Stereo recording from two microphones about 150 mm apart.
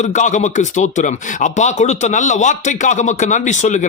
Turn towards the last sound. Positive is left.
turn(degrees=55)  # may be behind; listen again after turning